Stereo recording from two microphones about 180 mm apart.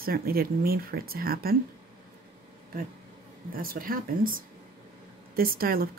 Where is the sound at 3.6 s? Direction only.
55° right (ahead or behind).